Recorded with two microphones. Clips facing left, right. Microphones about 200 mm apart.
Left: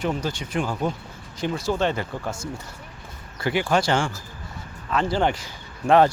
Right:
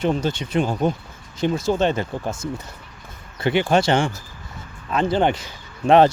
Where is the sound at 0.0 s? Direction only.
25° right (ahead or behind).